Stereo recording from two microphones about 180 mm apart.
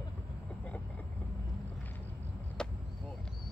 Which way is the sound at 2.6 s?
5° left (ahead or behind).